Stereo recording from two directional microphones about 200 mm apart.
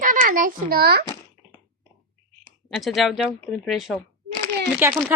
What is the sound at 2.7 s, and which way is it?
Speech, centre (ahead or behind).